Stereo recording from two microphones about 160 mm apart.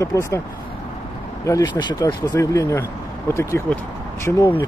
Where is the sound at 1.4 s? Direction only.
20° left (ahead or behind).